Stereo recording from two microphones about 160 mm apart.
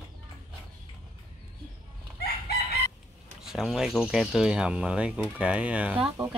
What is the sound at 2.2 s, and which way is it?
Chicken, 75° left (ahead or behind).